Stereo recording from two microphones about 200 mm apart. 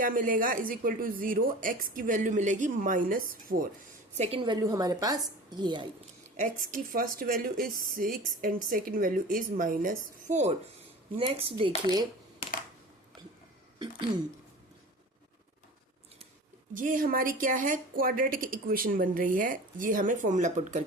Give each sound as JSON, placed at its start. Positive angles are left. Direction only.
{"t": 0.0, "sound": "speech", "side_deg": -45}
{"t": 4.2, "sound": "a woman's voice", "side_deg": -25}
{"t": 6.7, "sound": "a woman's voice", "side_deg": -45}
{"t": 11.9, "sound": "a sound", "side_deg": -20}
{"t": 16.7, "sound": "speech", "side_deg": -40}